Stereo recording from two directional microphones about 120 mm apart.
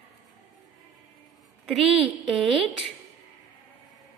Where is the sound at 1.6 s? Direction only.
5° right (ahead or behind).